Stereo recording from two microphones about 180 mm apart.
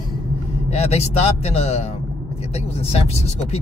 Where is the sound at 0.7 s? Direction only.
35° left (ahead or behind).